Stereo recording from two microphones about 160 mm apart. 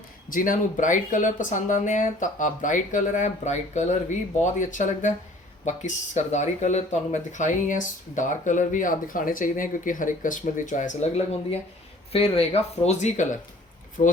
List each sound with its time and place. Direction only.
0.3 s speech: 60° left (ahead or behind)